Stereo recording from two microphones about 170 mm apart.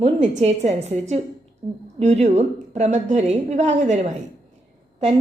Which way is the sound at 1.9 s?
40° right (ahead or behind).